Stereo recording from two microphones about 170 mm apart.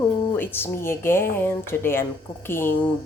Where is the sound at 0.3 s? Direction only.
15° left (ahead or behind).